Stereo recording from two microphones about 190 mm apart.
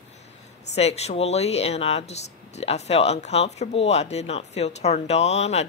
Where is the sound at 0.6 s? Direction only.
35° left (ahead or behind).